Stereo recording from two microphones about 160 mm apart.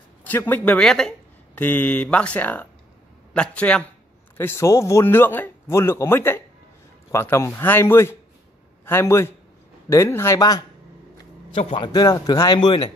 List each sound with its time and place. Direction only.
0.2 s speech: 10° left (ahead or behind)
11.5 s a man's voice: 35° left (ahead or behind)